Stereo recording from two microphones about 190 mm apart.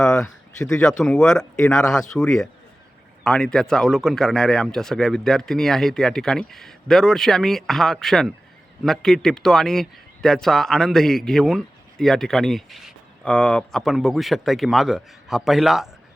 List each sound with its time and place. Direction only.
0.0 s speech: 5° left (ahead or behind)